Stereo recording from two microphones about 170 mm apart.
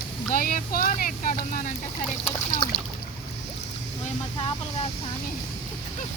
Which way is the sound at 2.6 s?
35° left (ahead or behind).